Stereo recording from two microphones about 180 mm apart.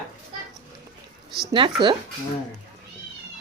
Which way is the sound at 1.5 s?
25° right (ahead or behind).